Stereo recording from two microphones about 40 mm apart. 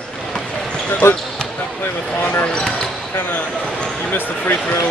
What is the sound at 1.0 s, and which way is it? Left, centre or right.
Speech, left.